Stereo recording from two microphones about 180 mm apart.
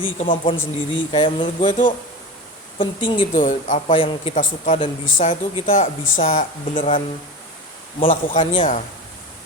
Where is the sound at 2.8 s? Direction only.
30° left (ahead or behind).